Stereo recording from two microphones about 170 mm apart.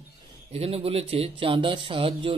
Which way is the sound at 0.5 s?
35° right (ahead or behind).